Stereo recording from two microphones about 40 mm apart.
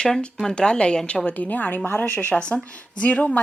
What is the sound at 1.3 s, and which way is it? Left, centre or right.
Speech, left.